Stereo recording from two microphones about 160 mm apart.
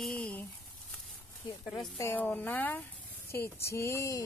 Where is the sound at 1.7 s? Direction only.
20° left (ahead or behind).